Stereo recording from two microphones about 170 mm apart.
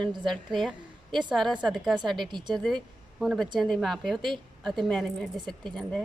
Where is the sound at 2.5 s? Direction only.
Centre (ahead or behind).